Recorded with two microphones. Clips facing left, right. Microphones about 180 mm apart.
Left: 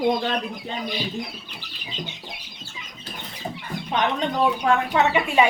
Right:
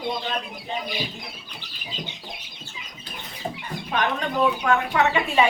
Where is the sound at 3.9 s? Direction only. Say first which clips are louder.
Left 2 dB; 25° left (ahead or behind).